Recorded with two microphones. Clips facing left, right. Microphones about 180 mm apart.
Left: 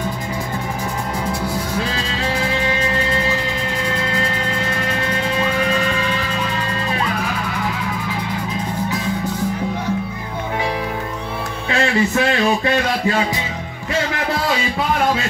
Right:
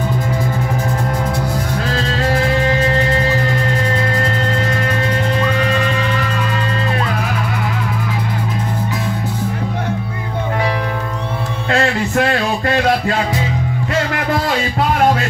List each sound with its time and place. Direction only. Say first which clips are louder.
11.7 s music: right 1 dB; 55° right (ahead or behind)